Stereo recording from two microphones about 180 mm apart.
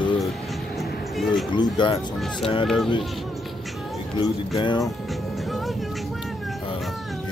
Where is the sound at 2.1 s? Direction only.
Centre (ahead or behind).